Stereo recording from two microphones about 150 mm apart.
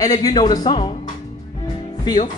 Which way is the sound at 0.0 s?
25° left (ahead or behind).